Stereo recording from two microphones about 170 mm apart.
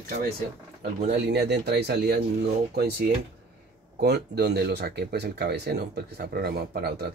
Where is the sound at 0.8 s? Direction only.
75° right (ahead or behind).